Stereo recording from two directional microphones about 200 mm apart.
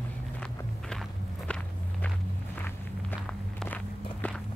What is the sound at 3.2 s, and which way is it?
Walk, 5° left (ahead or behind).